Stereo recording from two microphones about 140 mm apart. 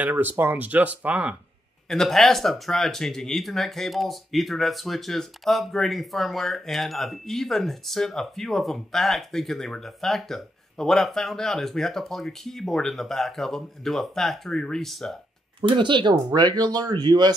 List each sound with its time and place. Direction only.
0.0 s speech: 15° right (ahead or behind)
1.9 s speech: centre (ahead or behind)
15.6 s speech: 35° right (ahead or behind)